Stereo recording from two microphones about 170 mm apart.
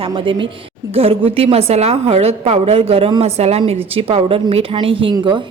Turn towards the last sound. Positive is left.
turn(degrees=-30)  # may be behind; listen again after turning